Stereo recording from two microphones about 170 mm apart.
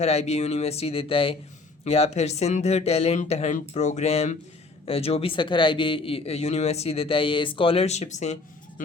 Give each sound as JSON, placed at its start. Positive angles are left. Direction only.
{"t": 0.0, "sound": "speech", "side_deg": 40}